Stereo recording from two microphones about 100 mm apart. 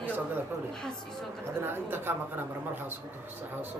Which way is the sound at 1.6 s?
25° right (ahead or behind).